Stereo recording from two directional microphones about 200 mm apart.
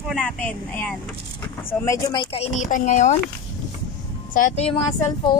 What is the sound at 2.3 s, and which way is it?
Speech, 35° left (ahead or behind).